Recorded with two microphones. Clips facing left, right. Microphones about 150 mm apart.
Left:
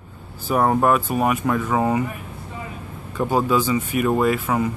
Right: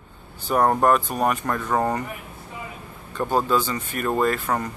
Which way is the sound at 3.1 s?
10° left (ahead or behind).